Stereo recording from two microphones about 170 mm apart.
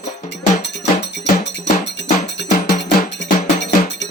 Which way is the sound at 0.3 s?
90° left.